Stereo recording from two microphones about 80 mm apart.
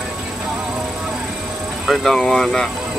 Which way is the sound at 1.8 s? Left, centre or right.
Centre.